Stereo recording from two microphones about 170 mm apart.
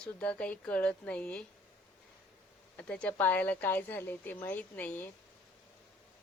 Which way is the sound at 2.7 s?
10° left (ahead or behind).